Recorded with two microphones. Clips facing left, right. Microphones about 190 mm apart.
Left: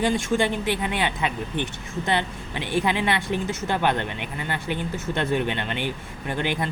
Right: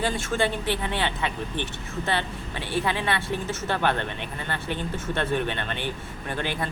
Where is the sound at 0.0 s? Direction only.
15° left (ahead or behind).